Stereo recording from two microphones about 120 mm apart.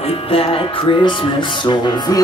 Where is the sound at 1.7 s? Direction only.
35° left (ahead or behind).